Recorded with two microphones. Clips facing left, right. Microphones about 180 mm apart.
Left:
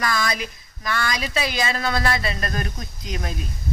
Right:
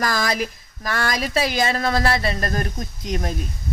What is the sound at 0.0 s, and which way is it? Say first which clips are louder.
Speech: right 2 dB; 45° right (ahead or behind).